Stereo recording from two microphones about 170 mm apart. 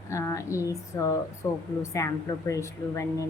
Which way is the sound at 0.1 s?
20° left (ahead or behind).